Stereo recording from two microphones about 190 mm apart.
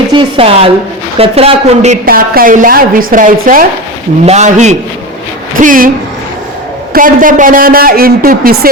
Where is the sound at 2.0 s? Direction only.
50° right (ahead or behind).